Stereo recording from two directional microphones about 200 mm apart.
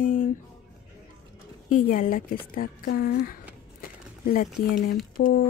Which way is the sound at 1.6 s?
40° left (ahead or behind).